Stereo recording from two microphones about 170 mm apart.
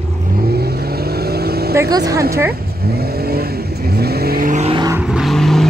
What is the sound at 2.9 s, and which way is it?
Vehicle, 65° right (ahead or behind).